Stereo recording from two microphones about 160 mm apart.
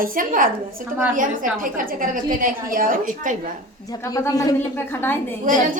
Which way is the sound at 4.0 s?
20° left (ahead or behind).